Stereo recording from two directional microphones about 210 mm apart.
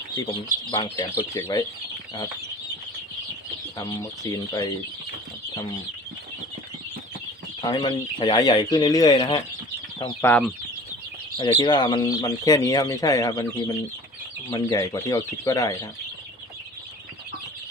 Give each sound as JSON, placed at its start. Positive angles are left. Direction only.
{"t": 0.7, "sound": "speech", "side_deg": 15}
{"t": 3.8, "sound": "speech", "side_deg": 15}
{"t": 7.6, "sound": "speech", "side_deg": 20}
{"t": 10.2, "sound": "speech", "side_deg": 5}
{"t": 11.3, "sound": "speech", "side_deg": 20}